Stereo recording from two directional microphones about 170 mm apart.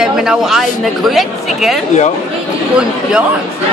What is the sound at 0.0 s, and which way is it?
Speech, 5° right (ahead or behind).